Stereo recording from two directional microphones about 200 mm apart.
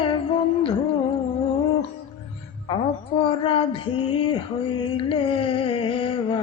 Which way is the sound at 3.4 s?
25° left (ahead or behind).